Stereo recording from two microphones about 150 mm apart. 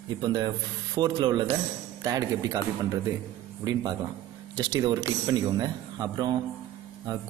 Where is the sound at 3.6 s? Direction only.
25° right (ahead or behind).